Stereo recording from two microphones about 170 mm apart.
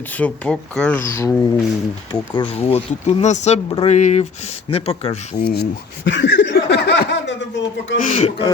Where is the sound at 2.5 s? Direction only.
35° left (ahead or behind).